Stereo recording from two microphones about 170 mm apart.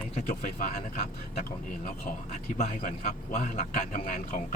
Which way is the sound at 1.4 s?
50° left (ahead or behind).